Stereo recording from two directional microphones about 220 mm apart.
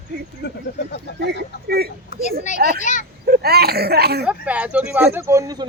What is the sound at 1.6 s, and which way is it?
Speech, 45° right (ahead or behind).